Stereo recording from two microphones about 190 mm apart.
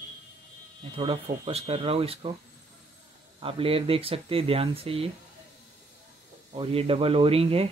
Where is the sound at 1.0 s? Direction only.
30° right (ahead or behind).